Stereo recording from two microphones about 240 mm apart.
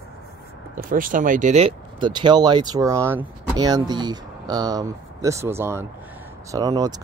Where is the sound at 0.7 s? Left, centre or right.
Right.